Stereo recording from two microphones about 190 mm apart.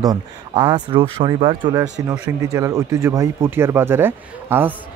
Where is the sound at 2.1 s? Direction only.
15° right (ahead or behind).